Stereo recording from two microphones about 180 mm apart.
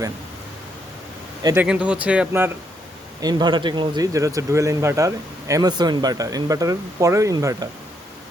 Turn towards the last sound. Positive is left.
turn(degrees=-20)  # may be behind; listen again after turning